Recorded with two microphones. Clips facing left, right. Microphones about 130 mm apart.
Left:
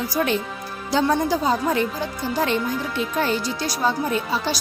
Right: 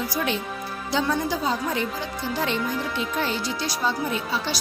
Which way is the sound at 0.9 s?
40° left (ahead or behind).